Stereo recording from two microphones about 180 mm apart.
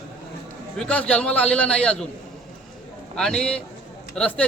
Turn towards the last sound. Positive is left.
turn(degrees=5)  # may be behind; listen again after turning